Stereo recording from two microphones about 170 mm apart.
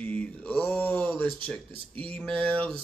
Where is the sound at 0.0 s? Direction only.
10° left (ahead or behind).